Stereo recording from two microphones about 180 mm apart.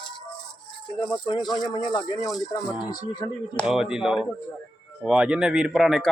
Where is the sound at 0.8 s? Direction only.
25° left (ahead or behind).